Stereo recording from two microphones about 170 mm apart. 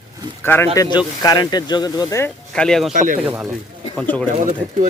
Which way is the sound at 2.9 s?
45° right (ahead or behind).